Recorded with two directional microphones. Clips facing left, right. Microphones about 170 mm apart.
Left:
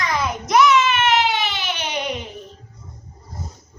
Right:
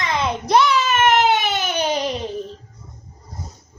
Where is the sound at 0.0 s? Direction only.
25° right (ahead or behind).